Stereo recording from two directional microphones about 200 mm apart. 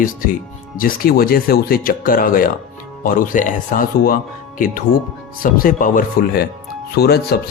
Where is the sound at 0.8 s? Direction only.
45° left (ahead or behind).